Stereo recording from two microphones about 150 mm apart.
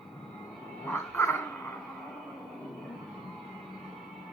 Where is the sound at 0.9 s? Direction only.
15° left (ahead or behind).